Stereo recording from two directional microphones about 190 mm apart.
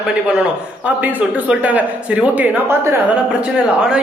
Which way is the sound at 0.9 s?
10° right (ahead or behind).